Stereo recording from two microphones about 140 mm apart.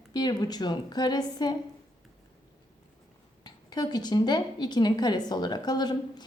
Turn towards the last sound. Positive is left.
turn(degrees=30)  # may be behind; listen again after turning